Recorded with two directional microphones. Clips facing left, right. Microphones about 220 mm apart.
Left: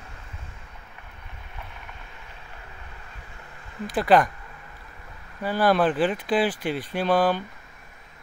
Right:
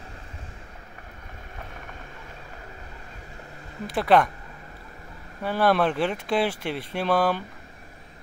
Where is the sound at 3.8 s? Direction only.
Centre (ahead or behind).